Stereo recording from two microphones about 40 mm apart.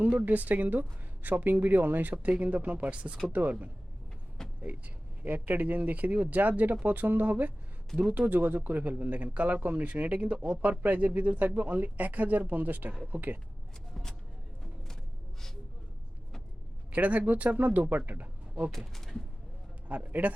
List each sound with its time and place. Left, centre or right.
0.3 s speech: right
4.4 s vehicle: centre
5.2 s speech: right
13.9 s a sound: centre
16.9 s speech: right
18.9 s speech: centre
20.1 s speech: right